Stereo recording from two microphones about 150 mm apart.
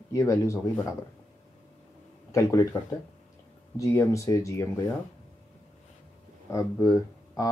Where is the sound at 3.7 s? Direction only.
20° left (ahead or behind).